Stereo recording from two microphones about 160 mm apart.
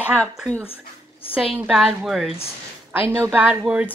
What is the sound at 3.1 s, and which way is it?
Speech, 15° right (ahead or behind).